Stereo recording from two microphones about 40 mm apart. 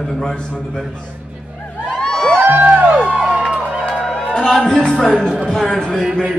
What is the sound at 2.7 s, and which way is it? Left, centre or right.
Music, right.